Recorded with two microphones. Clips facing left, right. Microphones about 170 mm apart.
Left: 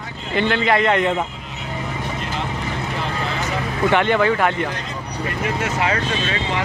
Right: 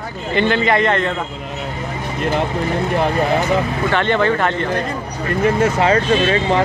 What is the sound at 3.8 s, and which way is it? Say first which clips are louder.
Speech: left 2 dB; 10° left (ahead or behind).